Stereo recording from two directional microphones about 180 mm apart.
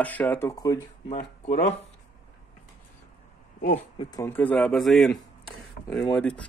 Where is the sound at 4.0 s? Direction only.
20° left (ahead or behind).